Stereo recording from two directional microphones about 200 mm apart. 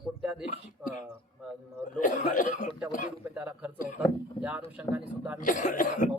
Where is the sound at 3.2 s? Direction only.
10° right (ahead or behind).